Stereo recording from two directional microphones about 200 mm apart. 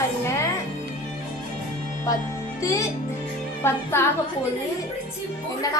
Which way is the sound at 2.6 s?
15° left (ahead or behind).